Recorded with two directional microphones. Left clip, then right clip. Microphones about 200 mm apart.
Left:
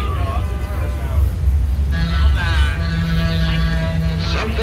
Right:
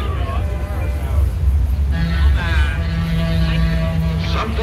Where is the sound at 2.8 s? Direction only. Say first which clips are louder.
Left 1 dB; 50° left (ahead or behind).